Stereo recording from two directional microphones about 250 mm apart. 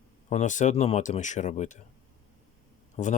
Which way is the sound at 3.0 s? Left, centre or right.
Left.